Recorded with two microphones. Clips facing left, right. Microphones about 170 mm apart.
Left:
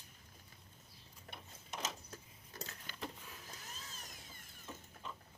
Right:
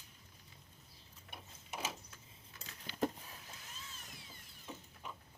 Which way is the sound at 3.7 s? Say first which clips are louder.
Left 1 dB; 40° left (ahead or behind).